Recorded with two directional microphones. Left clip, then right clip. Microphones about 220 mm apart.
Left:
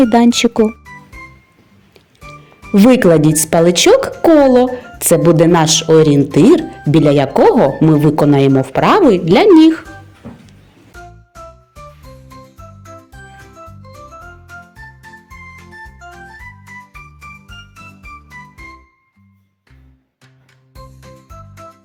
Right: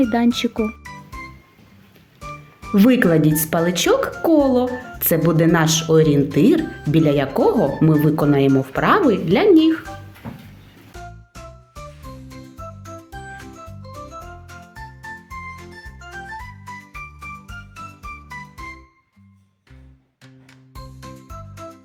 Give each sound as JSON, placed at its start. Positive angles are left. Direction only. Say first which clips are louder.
{"t": 0.0, "sound": "speech", "louder": "left 8 dB", "side_deg": 30}
{"t": 2.2, "sound": "music", "louder": "right 1 dB", "side_deg": 0}
{"t": 2.7, "sound": "speech", "louder": "left 7 dB", "side_deg": 20}
{"t": 18.3, "sound": "music", "louder": "even", "side_deg": 0}